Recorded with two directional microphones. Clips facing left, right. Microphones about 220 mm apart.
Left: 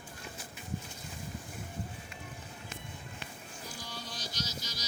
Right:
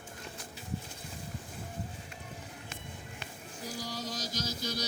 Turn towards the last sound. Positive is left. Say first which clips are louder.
# right 6 dB
turn(degrees=-50)  # may be behind; listen again after turning